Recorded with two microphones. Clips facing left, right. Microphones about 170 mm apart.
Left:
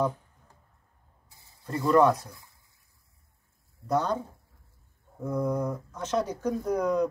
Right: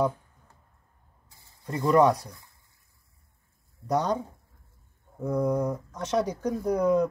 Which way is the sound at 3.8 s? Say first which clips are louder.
Right 1 dB; 15° right (ahead or behind).